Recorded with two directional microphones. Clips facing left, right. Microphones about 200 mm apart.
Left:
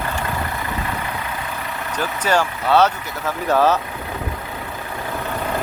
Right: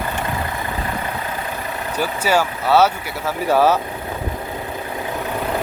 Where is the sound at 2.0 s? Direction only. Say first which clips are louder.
Right 1 dB; 10° right (ahead or behind).